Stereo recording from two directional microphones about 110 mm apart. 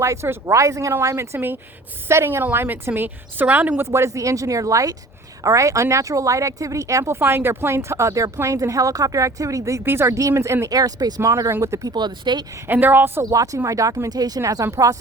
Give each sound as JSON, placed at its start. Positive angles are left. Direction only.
{"t": 0.0, "sound": "speech", "side_deg": -25}
{"t": 12.6, "sound": "speech", "side_deg": -20}
{"t": 13.2, "sound": "speech", "side_deg": -30}